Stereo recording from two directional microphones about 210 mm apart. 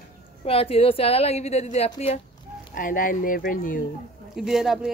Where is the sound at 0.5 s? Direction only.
25° left (ahead or behind).